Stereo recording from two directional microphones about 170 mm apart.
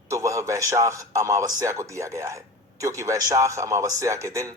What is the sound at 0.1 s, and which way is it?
A man's voice, 20° right (ahead or behind).